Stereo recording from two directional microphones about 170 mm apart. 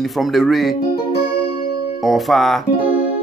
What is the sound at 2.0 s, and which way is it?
Speech, centre (ahead or behind).